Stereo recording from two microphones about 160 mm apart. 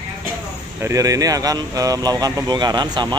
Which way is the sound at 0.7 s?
20° right (ahead or behind).